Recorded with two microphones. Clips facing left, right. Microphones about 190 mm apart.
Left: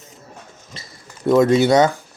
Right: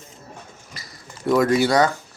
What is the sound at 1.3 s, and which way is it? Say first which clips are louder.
Speech: left 4 dB; 25° left (ahead or behind).